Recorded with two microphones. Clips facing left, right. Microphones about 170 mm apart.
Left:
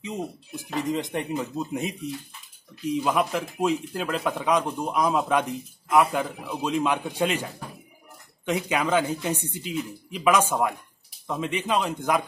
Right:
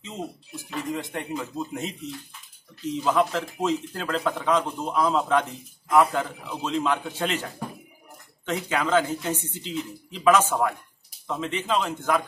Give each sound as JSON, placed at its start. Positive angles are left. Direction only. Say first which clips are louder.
{"t": 0.0, "sound": "speech", "louder": "left 3 dB", "side_deg": 15}
{"t": 8.5, "sound": "speech", "louder": "left 1 dB", "side_deg": 15}